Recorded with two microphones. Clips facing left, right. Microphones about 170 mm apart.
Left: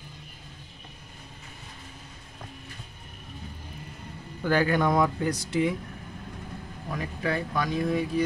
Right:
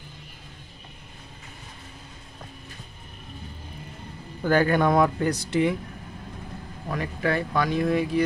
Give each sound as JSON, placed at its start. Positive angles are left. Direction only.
{"t": 4.4, "sound": "speech", "side_deg": -45}
{"t": 6.9, "sound": "speech", "side_deg": -65}